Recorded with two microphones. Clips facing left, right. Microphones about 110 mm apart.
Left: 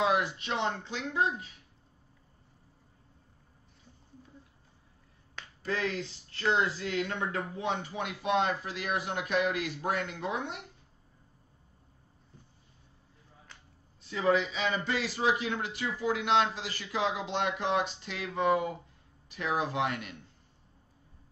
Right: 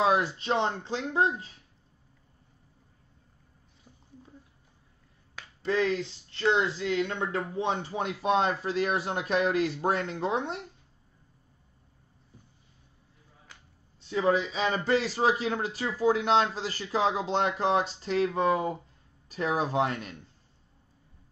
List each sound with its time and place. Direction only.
0.0 s a man's voice: 35° right (ahead or behind)
5.6 s a man's voice: 25° right (ahead or behind)
14.0 s a man's voice: 30° right (ahead or behind)